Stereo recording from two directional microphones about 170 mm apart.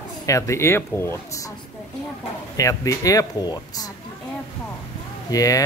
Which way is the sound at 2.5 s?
20° left (ahead or behind).